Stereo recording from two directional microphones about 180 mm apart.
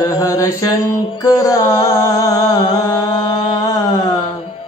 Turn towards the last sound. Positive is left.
turn(degrees=20)  # may be behind; listen again after turning